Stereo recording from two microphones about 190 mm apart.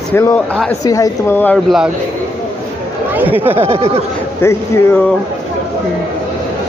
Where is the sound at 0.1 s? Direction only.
10° left (ahead or behind).